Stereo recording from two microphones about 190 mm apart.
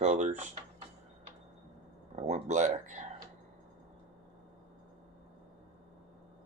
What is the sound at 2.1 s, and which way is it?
Speech, 35° right (ahead or behind).